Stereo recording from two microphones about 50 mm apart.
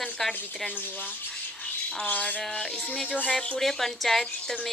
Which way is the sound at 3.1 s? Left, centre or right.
Left.